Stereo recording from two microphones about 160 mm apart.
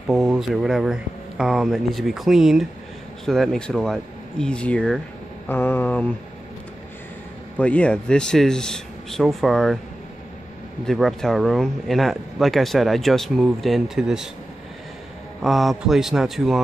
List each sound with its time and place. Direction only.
0.1 s speech: centre (ahead or behind)
7.5 s speech: 10° left (ahead or behind)
10.9 s speech: centre (ahead or behind)
15.4 s speech: centre (ahead or behind)